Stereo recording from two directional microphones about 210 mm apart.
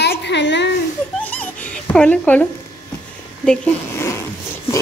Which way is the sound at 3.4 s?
10° left (ahead or behind).